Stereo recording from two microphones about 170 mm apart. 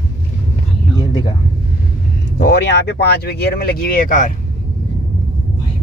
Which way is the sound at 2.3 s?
75° left (ahead or behind).